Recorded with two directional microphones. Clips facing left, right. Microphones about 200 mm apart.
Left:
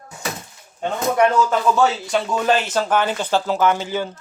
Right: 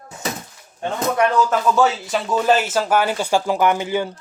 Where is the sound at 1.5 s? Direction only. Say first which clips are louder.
Even; centre (ahead or behind).